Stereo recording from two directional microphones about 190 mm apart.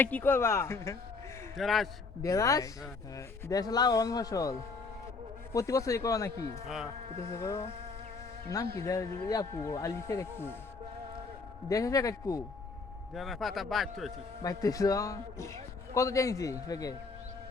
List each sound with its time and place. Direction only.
0.0 s speech: 10° left (ahead or behind)
1.5 s a man's voice: centre (ahead or behind)
2.2 s a man's voice: 15° left (ahead or behind)
5.5 s speech: 15° left (ahead or behind)
7.3 s speech: 15° left (ahead or behind)
8.7 s speech: 15° left (ahead or behind)
11.7 s speech: 20° left (ahead or behind)
13.1 s a man's voice: centre (ahead or behind)
14.4 s speech: 20° left (ahead or behind)